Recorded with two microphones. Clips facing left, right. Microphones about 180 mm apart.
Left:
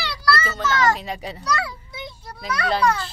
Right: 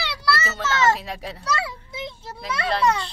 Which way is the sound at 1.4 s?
25° right (ahead or behind).